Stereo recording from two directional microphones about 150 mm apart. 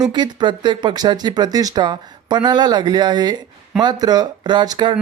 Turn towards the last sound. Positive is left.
turn(degrees=-30)  # may be behind; listen again after turning